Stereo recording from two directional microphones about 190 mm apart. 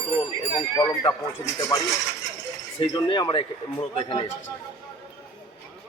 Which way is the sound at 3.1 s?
25° left (ahead or behind).